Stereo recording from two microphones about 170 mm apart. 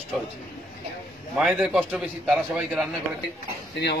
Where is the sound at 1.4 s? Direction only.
5° right (ahead or behind).